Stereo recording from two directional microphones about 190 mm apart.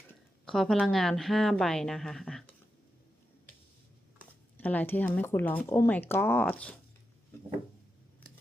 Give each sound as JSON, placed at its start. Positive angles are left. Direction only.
{"t": 0.4, "sound": "a woman's voice", "side_deg": 0}
{"t": 4.5, "sound": "speech", "side_deg": 10}